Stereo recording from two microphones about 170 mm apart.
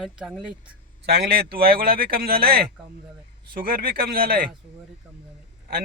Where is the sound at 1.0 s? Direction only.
70° right (ahead or behind).